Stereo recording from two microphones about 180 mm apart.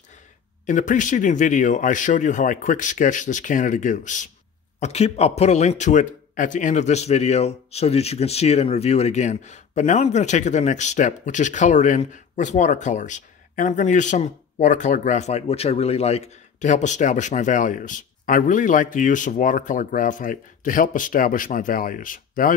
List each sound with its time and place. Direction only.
0.7 s a man's voice: 45° left (ahead or behind)